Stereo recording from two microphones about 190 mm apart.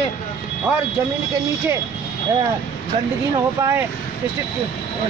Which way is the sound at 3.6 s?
15° right (ahead or behind).